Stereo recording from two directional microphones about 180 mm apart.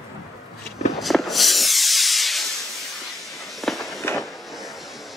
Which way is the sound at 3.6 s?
Centre (ahead or behind).